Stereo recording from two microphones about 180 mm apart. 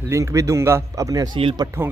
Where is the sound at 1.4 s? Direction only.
30° right (ahead or behind).